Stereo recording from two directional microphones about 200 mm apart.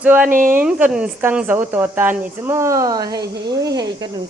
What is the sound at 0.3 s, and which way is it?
Speech, 45° right (ahead or behind).